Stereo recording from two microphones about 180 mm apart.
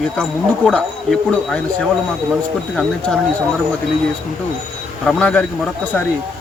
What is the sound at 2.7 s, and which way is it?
Speech, 5° left (ahead or behind).